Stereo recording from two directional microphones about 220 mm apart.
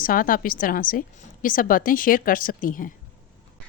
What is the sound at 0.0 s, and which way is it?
A woman's voice, 40° left (ahead or behind).